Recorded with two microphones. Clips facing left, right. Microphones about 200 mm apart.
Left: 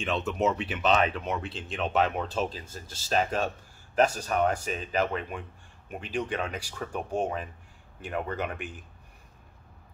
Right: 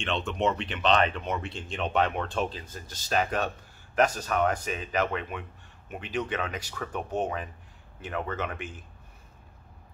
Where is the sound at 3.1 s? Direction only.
25° left (ahead or behind).